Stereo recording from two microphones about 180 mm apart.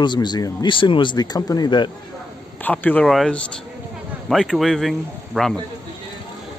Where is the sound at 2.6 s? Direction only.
10° left (ahead or behind).